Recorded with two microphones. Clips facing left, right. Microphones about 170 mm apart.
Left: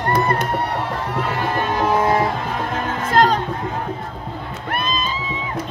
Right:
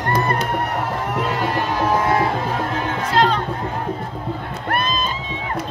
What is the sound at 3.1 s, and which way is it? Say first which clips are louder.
Music: left 2 dB; 45° left (ahead or behind).